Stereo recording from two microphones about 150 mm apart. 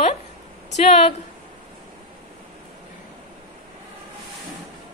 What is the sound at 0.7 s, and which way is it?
Speech, 45° left (ahead or behind).